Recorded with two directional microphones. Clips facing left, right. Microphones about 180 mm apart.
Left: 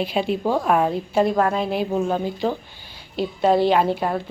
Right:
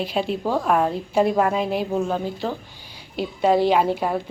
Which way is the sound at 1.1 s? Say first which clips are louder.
Even; 10° right (ahead or behind).